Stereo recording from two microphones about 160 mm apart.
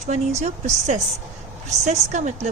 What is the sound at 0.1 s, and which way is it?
Speech, 45° right (ahead or behind).